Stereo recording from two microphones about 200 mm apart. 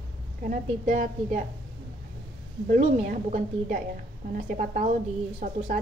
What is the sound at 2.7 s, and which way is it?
A woman's voice, 35° right (ahead or behind).